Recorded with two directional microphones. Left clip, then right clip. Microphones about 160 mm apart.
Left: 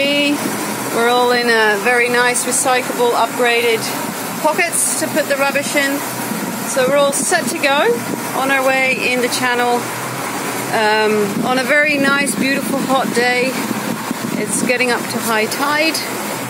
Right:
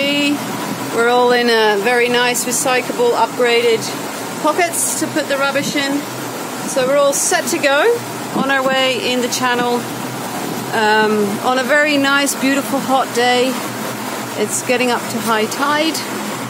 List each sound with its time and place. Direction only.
0.0 s vehicle: 15° right (ahead or behind)
1.0 s speech: 35° right (ahead or behind)
2.2 s speech: 25° right (ahead or behind)
6.8 s speech: 25° right (ahead or behind)
14.7 s speech: 15° right (ahead or behind)